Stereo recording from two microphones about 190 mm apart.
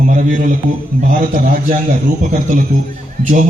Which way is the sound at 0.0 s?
45° right (ahead or behind).